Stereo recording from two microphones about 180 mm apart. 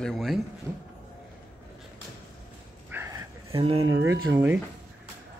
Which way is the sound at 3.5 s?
30° right (ahead or behind).